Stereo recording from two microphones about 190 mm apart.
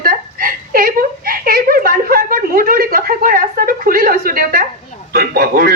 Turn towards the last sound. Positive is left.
turn(degrees=-50)  # may be behind; listen again after turning